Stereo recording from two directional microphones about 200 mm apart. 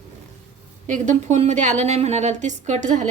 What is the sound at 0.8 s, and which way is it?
A woman's voice, 40° right (ahead or behind).